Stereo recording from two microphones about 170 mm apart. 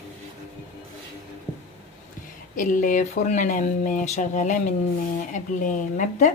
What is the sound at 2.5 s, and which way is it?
Speech, 50° left (ahead or behind).